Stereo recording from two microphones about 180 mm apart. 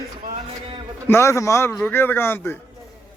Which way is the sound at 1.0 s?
15° left (ahead or behind).